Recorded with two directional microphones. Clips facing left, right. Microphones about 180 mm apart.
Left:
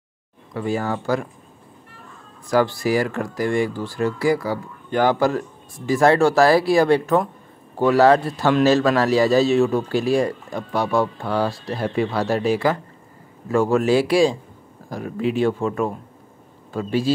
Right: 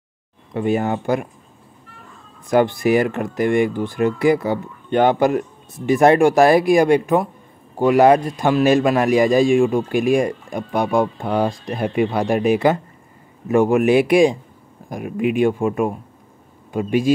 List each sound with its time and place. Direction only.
0.5 s speech: 20° right (ahead or behind)
2.5 s a man's voice: 20° right (ahead or behind)